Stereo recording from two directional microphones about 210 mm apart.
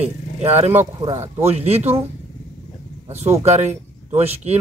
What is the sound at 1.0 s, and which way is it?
Speech, 25° right (ahead or behind).